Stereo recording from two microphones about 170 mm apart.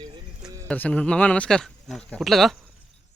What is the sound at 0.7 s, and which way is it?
Speech, 5° left (ahead or behind).